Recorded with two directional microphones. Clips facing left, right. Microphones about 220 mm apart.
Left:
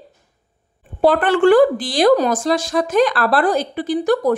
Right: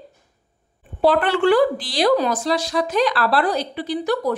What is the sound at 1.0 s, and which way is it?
A woman's voice, 45° left (ahead or behind).